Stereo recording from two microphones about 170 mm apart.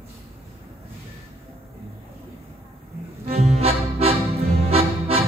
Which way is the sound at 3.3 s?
35° right (ahead or behind).